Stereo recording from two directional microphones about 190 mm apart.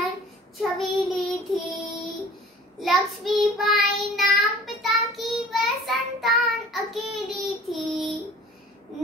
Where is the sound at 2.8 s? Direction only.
Centre (ahead or behind).